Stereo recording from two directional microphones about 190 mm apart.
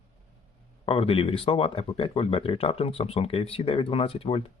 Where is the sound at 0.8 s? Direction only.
30° left (ahead or behind).